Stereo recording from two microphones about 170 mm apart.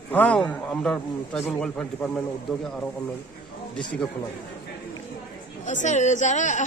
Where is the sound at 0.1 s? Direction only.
10° left (ahead or behind).